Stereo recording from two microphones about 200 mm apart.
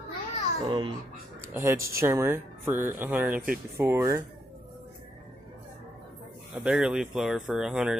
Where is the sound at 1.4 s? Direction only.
15° right (ahead or behind).